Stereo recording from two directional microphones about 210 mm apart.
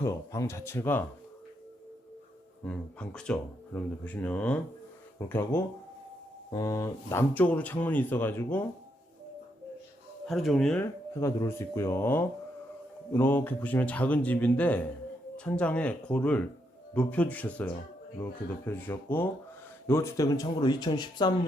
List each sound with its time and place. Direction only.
0.0 s speech: 15° left (ahead or behind)
2.6 s speech: 5° left (ahead or behind)
10.2 s speech: centre (ahead or behind)
11.1 s speech: 15° left (ahead or behind)